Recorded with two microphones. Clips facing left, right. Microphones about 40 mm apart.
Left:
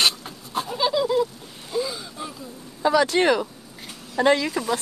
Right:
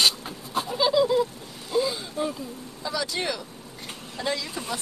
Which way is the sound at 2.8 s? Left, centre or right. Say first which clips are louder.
Left 11 dB; left.